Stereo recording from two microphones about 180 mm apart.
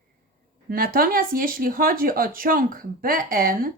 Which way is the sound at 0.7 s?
55° right (ahead or behind).